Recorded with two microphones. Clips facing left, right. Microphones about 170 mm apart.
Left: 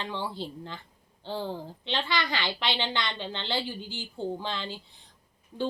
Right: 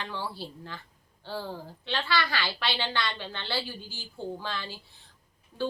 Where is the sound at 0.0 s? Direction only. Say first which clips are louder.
Left 2 dB; 20° left (ahead or behind).